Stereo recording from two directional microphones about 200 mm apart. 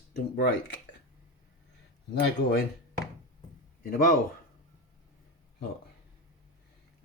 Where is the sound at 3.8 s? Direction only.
45° left (ahead or behind).